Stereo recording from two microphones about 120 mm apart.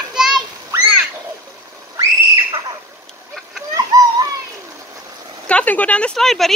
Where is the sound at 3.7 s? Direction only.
30° right (ahead or behind).